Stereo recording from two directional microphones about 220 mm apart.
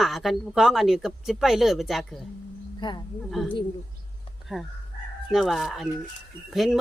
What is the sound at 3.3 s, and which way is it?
Speech, centre (ahead or behind).